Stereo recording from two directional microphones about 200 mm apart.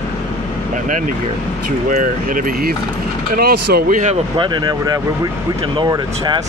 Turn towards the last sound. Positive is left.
turn(degrees=-20)  # may be behind; listen again after turning